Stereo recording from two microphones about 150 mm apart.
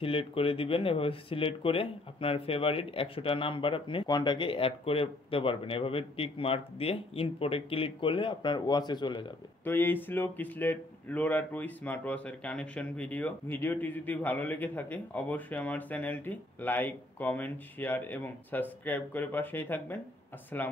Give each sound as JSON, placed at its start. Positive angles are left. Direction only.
{"t": 0.0, "sound": "speech", "side_deg": 40}
{"t": 9.7, "sound": "speech", "side_deg": 15}